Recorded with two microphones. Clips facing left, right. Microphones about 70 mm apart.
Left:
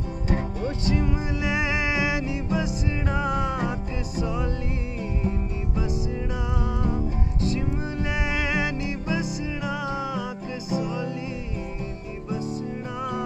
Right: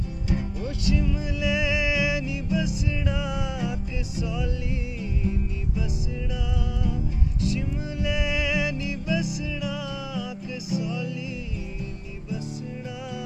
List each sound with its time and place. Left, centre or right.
0.3 s music: left